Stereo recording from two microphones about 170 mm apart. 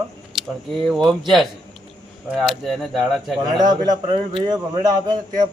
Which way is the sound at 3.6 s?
25° right (ahead or behind).